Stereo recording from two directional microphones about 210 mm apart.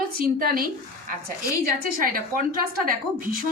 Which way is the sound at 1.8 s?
45° right (ahead or behind).